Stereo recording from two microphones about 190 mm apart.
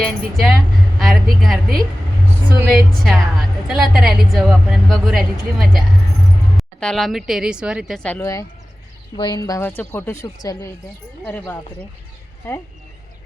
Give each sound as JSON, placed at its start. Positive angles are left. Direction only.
{"t": 0.0, "sound": "a woman's voice", "side_deg": 0}
{"t": 8.2, "sound": "speech", "side_deg": 20}